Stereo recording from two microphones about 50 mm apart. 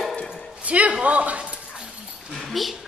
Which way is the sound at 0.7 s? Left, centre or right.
Right.